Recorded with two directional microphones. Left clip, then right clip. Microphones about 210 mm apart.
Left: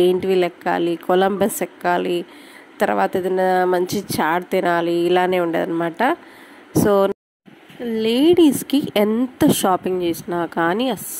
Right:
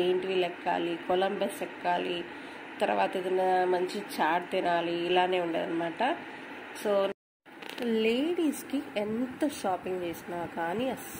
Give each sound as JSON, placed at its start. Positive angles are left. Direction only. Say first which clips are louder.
{"t": 0.0, "sound": "a woman's voice", "louder": "left 11 dB", "side_deg": 50}
{"t": 7.9, "sound": "a woman's voice", "louder": "left 12 dB", "side_deg": 35}